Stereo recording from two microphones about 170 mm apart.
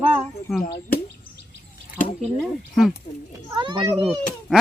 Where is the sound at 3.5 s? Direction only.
30° right (ahead or behind).